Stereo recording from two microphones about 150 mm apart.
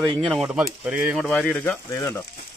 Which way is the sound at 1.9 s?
20° left (ahead or behind).